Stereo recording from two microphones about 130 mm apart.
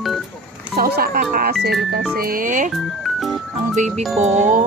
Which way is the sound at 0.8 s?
90° right.